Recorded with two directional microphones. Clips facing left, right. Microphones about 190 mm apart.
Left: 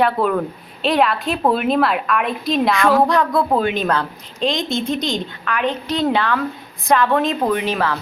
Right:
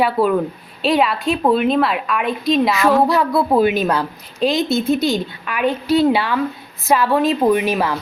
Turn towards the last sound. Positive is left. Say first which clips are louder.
# right 3 dB
turn(degrees=-10)  # may be behind; listen again after turning